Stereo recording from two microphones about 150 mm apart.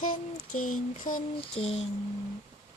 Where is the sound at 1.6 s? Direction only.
45° left (ahead or behind).